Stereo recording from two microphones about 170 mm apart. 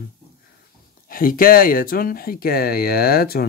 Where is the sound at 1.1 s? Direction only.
55° left (ahead or behind).